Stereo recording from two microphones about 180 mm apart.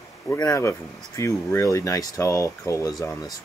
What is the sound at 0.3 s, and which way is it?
Speech, 15° left (ahead or behind).